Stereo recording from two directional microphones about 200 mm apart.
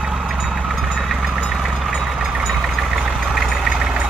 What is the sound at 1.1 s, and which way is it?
Vehicle, centre (ahead or behind).